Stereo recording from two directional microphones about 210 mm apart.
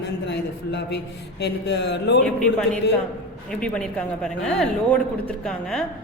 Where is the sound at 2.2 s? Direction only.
5° left (ahead or behind).